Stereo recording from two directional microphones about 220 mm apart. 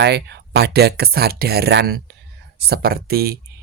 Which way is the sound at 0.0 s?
50° right (ahead or behind).